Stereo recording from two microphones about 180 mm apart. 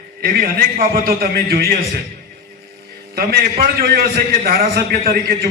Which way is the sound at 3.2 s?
60° right (ahead or behind).